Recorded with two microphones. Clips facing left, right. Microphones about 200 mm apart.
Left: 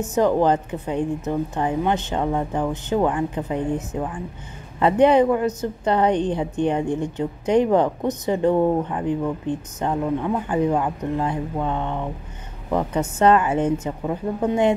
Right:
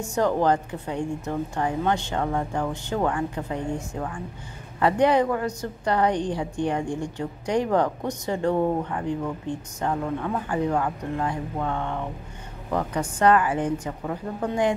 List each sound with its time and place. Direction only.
0.0 s a woman's voice: 20° left (ahead or behind)